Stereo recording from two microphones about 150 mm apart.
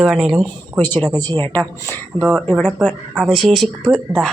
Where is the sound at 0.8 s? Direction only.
10° left (ahead or behind).